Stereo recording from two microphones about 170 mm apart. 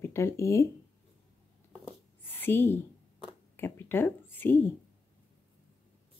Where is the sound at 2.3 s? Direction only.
10° left (ahead or behind).